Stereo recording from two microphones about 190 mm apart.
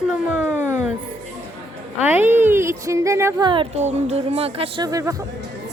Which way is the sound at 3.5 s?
30° right (ahead or behind).